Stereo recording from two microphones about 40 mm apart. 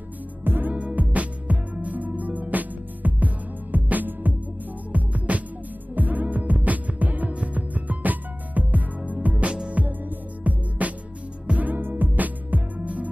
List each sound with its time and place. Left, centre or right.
0.4 s music: right
0.7 s music: right
9.3 s music: right
9.8 s music: right
11.7 s music: right